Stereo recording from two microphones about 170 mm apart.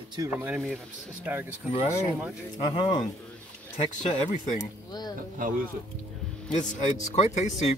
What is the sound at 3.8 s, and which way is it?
Speech, 45° left (ahead or behind).